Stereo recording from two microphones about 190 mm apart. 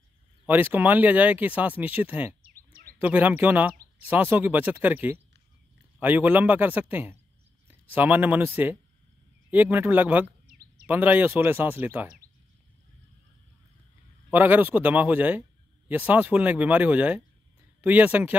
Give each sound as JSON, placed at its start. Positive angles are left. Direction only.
{"t": 0.5, "sound": "speech", "side_deg": -10}
{"t": 2.4, "sound": "a sound", "side_deg": -50}
{"t": 3.0, "sound": "speech", "side_deg": -10}
{"t": 9.5, "sound": "speech", "side_deg": -10}
{"t": 10.4, "sound": "a sound", "side_deg": -50}
{"t": 10.9, "sound": "speech", "side_deg": -10}
{"t": 14.3, "sound": "speech", "side_deg": -10}